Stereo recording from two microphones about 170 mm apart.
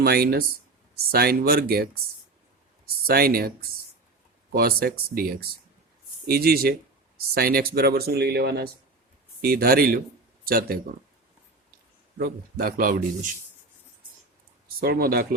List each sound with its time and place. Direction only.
0.0 s speech: 65° right (ahead or behind)
4.5 s speech: 60° right (ahead or behind)
12.1 s speech: 60° right (ahead or behind)
14.8 s speech: 60° right (ahead or behind)